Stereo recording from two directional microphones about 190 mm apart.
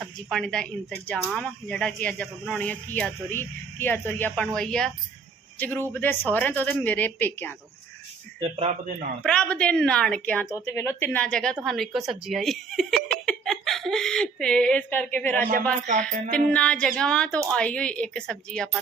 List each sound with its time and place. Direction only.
0.0 s speech: centre (ahead or behind)
8.4 s speech: 35° right (ahead or behind)
9.2 s speech: 5° left (ahead or behind)
16.5 s speech: 5° left (ahead or behind)